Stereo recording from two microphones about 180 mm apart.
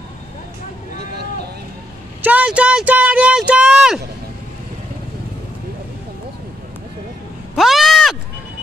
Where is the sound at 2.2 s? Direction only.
10° right (ahead or behind).